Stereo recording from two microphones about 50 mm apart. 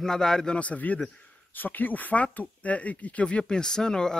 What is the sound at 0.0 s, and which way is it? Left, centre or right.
Speech, centre.